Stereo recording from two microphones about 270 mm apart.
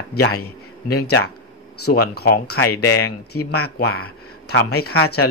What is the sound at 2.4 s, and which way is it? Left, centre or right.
Speech, left.